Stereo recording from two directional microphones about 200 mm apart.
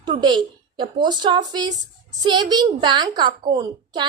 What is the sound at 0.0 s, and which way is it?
A woman's voice, 20° right (ahead or behind).